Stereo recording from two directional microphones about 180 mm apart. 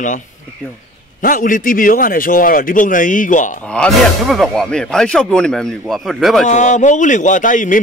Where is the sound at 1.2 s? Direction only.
50° left (ahead or behind).